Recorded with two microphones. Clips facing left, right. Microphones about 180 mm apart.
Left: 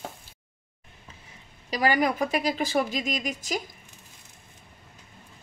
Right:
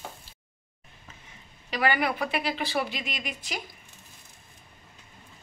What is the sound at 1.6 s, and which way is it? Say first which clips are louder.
A woman's voice: left 2 dB; 40° left (ahead or behind).